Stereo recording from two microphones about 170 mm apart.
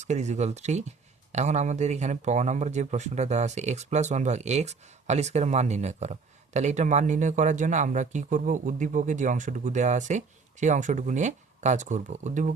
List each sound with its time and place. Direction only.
0.0 s speech: 45° right (ahead or behind)